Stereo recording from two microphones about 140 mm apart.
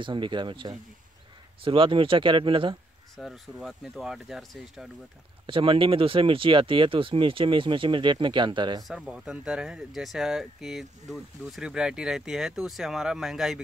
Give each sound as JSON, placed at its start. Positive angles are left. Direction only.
{"t": 0.0, "sound": "speech", "side_deg": -35}
{"t": 3.2, "sound": "speech", "side_deg": 0}
{"t": 5.5, "sound": "speech", "side_deg": -40}
{"t": 8.8, "sound": "speech", "side_deg": -5}